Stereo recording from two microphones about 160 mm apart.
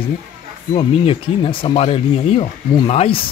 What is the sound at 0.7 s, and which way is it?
Speech, 35° left (ahead or behind).